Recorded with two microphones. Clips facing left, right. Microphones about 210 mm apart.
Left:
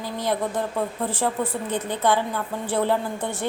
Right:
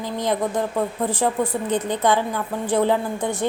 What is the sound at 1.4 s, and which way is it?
A woman's voice, 15° right (ahead or behind).